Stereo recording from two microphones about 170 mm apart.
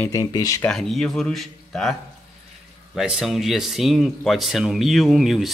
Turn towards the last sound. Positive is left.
turn(degrees=0)  # may be behind; listen again after turning